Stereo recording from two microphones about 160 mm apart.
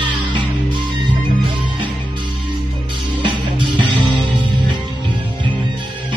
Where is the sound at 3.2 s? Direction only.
30° right (ahead or behind).